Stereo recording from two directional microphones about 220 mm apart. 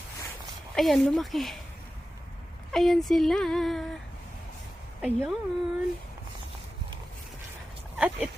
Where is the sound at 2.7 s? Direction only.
Centre (ahead or behind).